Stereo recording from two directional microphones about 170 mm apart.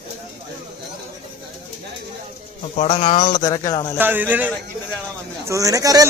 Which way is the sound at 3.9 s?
10° right (ahead or behind).